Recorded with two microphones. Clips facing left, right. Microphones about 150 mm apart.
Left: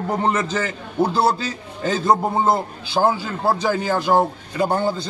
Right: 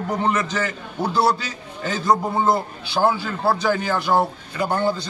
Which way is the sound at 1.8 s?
30° left (ahead or behind).